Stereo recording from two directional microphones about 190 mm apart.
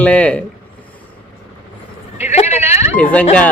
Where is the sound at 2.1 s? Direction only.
35° left (ahead or behind).